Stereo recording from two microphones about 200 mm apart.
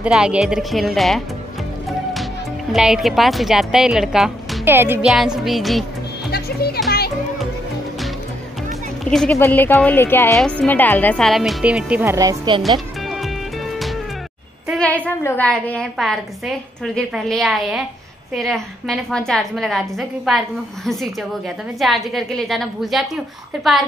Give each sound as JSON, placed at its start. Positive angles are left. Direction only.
{"t": 0.0, "sound": "speech", "side_deg": -5}
{"t": 2.7, "sound": "speech", "side_deg": 0}
{"t": 6.3, "sound": "a child's voice", "side_deg": 50}
{"t": 9.1, "sound": "speech", "side_deg": 5}
{"t": 13.0, "sound": "music", "side_deg": 0}
{"t": 14.7, "sound": "a sound", "side_deg": 5}
{"t": 15.0, "sound": "speech", "side_deg": 10}